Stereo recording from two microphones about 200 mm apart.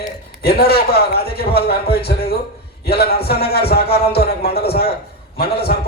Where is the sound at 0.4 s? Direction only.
50° left (ahead or behind).